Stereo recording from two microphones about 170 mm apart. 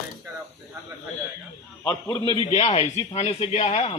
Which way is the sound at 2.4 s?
35° left (ahead or behind).